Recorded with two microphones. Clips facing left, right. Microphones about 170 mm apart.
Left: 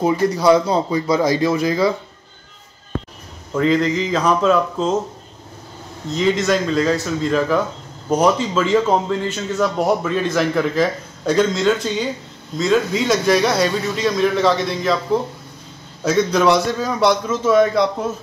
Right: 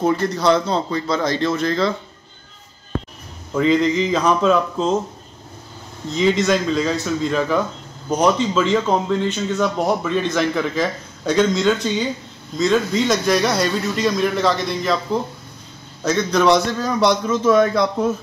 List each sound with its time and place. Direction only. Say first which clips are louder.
0.0 s a man's voice: left 2 dB; 10° left (ahead or behind)
3.5 s speech: right 1 dB; centre (ahead or behind)
6.1 s speech: even; centre (ahead or behind)
16.0 s speech: left 1 dB; 5° left (ahead or behind)